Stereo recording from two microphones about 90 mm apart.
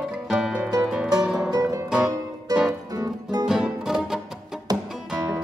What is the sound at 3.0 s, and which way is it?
Music, 45° right (ahead or behind).